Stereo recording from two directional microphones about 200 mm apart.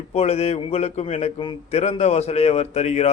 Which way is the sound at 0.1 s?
30° left (ahead or behind).